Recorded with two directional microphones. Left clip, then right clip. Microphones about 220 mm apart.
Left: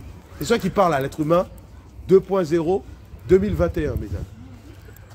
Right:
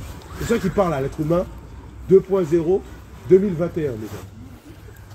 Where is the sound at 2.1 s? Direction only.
25° left (ahead or behind).